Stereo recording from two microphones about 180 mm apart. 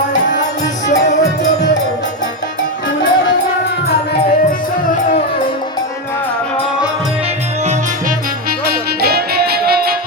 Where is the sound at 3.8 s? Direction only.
60° left (ahead or behind).